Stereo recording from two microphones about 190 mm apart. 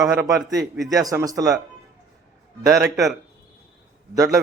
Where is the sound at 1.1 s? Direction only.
20° right (ahead or behind).